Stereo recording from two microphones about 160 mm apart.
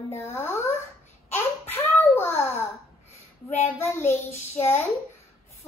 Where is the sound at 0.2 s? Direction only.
15° left (ahead or behind).